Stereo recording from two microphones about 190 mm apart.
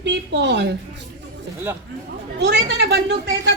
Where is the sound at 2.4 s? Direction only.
60° right (ahead or behind).